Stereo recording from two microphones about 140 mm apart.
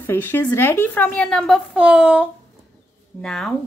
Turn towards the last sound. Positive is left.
turn(degrees=5)  # may be behind; listen again after turning